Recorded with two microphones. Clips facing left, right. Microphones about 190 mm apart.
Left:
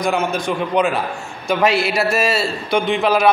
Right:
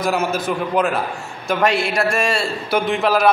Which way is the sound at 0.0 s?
5° right (ahead or behind).